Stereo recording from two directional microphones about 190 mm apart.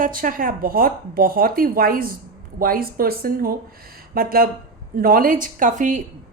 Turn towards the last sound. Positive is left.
turn(degrees=-40)  # may be behind; listen again after turning